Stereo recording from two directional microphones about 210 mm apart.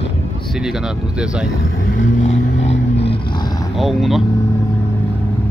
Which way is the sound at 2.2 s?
30° left (ahead or behind).